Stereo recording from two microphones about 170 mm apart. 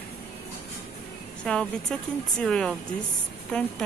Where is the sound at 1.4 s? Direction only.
5° left (ahead or behind).